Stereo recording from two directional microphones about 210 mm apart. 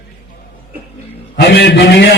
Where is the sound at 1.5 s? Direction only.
50° left (ahead or behind).